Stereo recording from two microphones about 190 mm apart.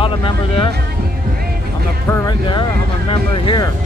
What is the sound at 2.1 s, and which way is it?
Speech, 20° left (ahead or behind).